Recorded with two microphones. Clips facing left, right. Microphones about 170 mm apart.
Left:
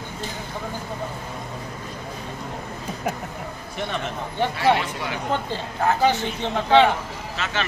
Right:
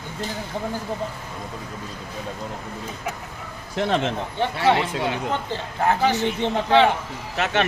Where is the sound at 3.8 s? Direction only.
90° right.